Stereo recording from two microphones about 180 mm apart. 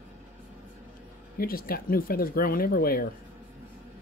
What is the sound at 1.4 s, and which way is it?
Speech, 55° left (ahead or behind).